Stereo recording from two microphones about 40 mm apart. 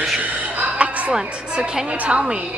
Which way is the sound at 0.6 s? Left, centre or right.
Right.